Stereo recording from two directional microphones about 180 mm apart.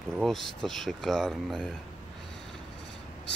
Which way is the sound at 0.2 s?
Centre (ahead or behind).